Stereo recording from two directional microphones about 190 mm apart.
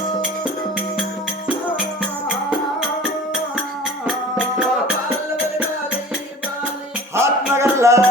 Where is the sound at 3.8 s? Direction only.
Centre (ahead or behind).